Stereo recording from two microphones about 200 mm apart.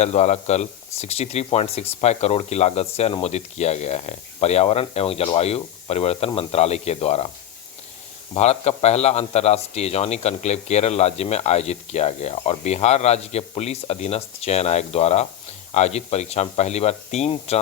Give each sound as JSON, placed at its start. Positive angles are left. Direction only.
{"t": 0.0, "sound": "speech", "side_deg": 35}
{"t": 8.3, "sound": "speech", "side_deg": 35}